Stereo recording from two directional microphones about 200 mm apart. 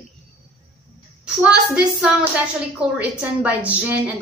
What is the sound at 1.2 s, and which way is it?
A woman's voice, 5° right (ahead or behind).